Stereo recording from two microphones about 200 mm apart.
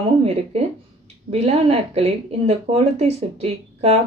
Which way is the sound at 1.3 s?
30° right (ahead or behind).